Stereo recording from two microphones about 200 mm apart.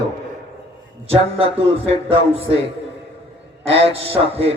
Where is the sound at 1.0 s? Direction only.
30° right (ahead or behind).